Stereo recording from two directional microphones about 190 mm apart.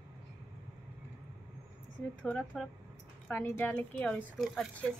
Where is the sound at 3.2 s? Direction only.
10° left (ahead or behind).